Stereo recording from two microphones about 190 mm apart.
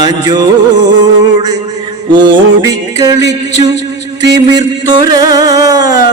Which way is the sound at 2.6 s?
20° right (ahead or behind).